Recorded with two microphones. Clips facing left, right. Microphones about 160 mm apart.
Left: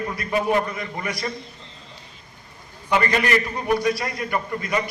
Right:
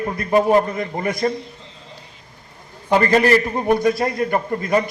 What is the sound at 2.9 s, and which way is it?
A man's voice, 35° right (ahead or behind).